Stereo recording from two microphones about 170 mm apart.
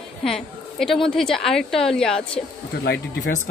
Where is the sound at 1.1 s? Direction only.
5° left (ahead or behind).